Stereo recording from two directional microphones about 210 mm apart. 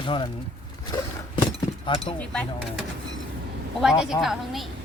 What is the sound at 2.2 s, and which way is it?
Speech, 5° left (ahead or behind).